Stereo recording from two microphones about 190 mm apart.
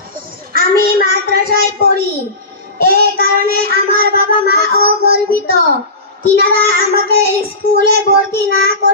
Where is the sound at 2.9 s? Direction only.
55° right (ahead or behind).